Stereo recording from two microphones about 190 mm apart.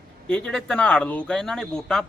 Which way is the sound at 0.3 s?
5° left (ahead or behind).